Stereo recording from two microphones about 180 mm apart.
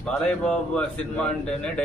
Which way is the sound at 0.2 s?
5° left (ahead or behind).